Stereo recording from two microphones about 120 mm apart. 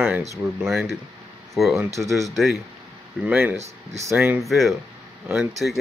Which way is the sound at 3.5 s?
65° right (ahead or behind).